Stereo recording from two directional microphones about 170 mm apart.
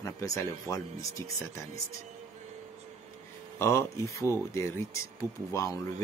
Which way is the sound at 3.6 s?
15° left (ahead or behind).